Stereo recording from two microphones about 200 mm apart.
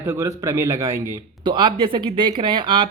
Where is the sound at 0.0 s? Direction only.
15° right (ahead or behind).